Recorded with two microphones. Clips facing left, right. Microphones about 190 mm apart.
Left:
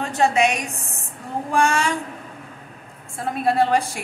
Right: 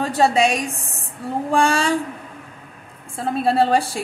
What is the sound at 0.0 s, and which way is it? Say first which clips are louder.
A woman's voice: right 2 dB; 35° right (ahead or behind).